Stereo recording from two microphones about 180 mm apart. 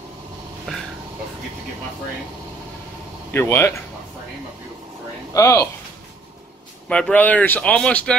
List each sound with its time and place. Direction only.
3.3 s speech: 15° left (ahead or behind)
5.3 s speech: 15° left (ahead or behind)
6.9 s speech: 5° left (ahead or behind)